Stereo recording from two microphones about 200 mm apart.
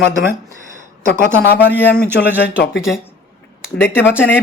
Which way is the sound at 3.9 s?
10° left (ahead or behind).